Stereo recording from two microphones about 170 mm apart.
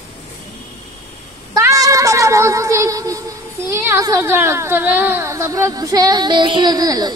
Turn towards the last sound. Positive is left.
turn(degrees=-20)  # may be behind; listen again after turning